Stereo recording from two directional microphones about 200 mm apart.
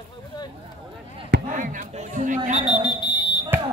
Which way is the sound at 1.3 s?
40° right (ahead or behind).